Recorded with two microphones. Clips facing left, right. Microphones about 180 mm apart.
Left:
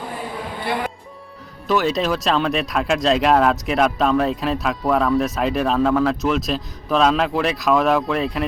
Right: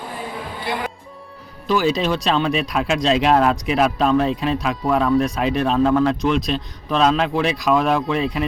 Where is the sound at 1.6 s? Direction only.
Centre (ahead or behind).